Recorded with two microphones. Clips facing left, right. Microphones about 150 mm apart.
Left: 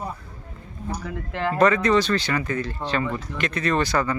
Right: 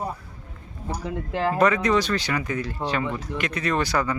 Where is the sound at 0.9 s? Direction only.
25° right (ahead or behind).